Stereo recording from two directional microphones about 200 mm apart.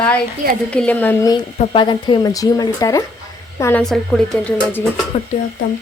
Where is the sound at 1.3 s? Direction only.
20° left (ahead or behind).